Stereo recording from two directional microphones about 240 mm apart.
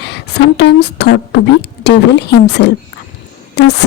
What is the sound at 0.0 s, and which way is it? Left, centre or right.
A woman's voice, left.